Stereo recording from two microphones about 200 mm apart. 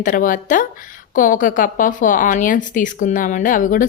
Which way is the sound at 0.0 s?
40° left (ahead or behind).